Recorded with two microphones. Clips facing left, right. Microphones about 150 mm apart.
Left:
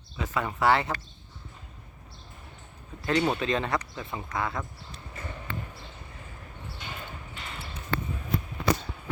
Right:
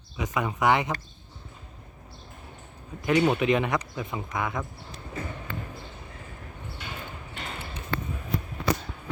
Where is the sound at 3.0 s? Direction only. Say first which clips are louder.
Right 3 dB; 15° right (ahead or behind).